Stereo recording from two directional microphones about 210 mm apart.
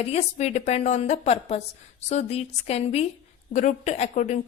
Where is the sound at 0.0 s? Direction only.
30° left (ahead or behind).